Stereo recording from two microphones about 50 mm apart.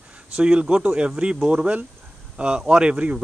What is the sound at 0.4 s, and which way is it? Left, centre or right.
Speech, right.